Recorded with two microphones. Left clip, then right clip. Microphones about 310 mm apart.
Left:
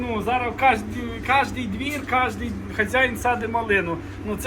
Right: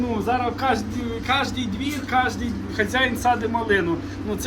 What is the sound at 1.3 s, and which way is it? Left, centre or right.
A man's voice, centre.